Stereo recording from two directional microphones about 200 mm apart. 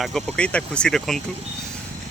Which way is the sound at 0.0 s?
Centre (ahead or behind).